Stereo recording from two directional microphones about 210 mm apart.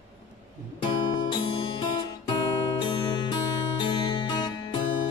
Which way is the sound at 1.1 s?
25° left (ahead or behind).